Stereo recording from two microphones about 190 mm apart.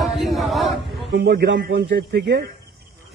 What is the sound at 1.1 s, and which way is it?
A man's voice, 65° right (ahead or behind).